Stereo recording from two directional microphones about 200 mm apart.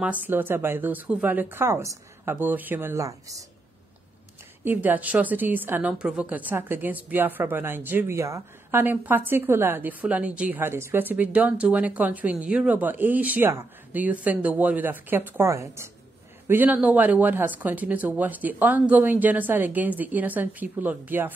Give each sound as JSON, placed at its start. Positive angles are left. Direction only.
{"t": 0.0, "sound": "a woman's voice", "side_deg": -10}
{"t": 4.6, "sound": "a woman's voice", "side_deg": -10}